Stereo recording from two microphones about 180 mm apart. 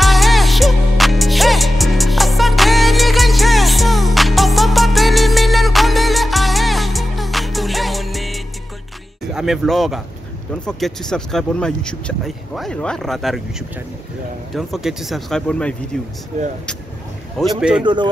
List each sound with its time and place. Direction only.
0.0 s music: centre (ahead or behind)
9.3 s speech: centre (ahead or behind)
14.5 s speech: centre (ahead or behind)
16.3 s speech: 40° right (ahead or behind)
17.4 s speech: 5° right (ahead or behind)